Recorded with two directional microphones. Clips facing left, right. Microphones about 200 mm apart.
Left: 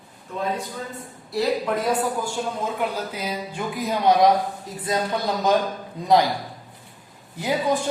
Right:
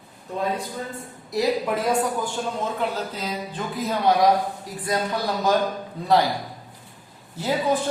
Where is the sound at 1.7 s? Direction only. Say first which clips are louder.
Even; centre (ahead or behind).